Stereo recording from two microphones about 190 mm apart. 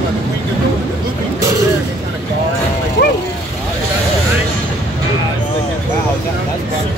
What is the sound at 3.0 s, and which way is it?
Speech, 60° left (ahead or behind).